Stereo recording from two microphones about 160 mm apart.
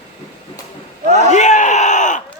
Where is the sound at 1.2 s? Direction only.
45° left (ahead or behind).